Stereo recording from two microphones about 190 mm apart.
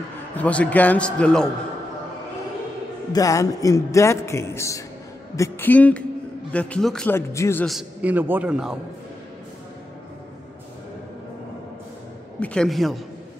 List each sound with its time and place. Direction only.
0.4 s a man's voice: 5° left (ahead or behind)
3.1 s a man's voice: 20° left (ahead or behind)
7.6 s a man's voice: 5° right (ahead or behind)
12.4 s a man's voice: centre (ahead or behind)